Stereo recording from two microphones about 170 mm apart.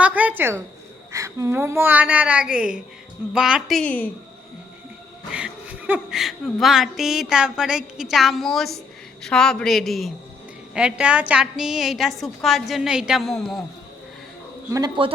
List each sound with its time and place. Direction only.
0.0 s a woman's voice: 10° right (ahead or behind); by 4.1 s 10° left (ahead or behind)
5.3 s speech: 10° right (ahead or behind)
14.7 s a man's voice: 20° right (ahead or behind)